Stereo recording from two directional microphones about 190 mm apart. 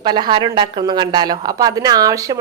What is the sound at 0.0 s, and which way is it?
Speech, 20° right (ahead or behind).